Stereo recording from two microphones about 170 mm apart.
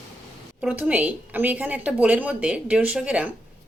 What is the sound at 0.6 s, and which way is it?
Speech, 10° right (ahead or behind).